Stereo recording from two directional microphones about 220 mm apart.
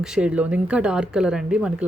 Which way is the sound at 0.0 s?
5° right (ahead or behind).